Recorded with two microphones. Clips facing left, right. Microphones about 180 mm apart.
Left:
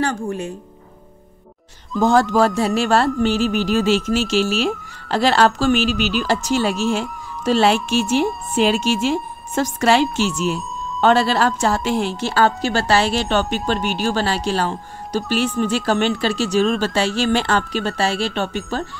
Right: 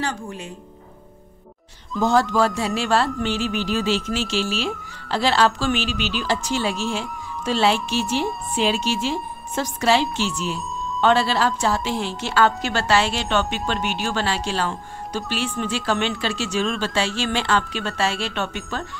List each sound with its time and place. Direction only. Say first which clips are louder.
0.0 s a woman's voice: left 6 dB; 50° left (ahead or behind)
2.0 s speech: left 4 dB; 45° left (ahead or behind)